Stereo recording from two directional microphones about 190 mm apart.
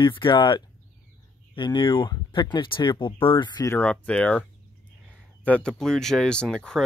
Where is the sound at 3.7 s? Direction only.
5° left (ahead or behind).